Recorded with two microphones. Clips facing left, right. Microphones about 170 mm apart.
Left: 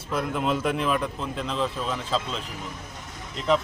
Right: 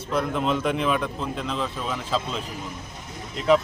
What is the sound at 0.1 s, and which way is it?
Speech, 5° left (ahead or behind).